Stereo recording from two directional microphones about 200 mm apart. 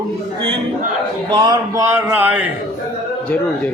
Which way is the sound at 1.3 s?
20° right (ahead or behind).